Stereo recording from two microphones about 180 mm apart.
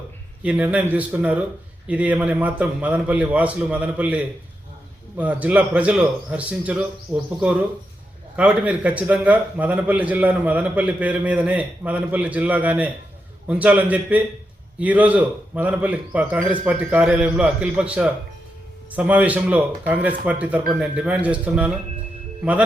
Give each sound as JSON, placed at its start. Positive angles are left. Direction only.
{"t": 0.4, "sound": "a man's voice", "side_deg": -5}